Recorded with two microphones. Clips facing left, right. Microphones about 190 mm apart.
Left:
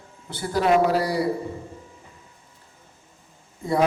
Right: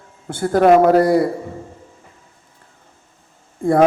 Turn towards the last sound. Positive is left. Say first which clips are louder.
# right 9 dB
turn(degrees=-50)  # may be behind; listen again after turning